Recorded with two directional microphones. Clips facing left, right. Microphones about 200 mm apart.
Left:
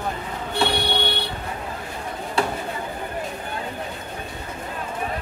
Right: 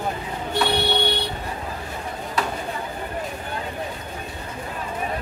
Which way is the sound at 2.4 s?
30° left (ahead or behind).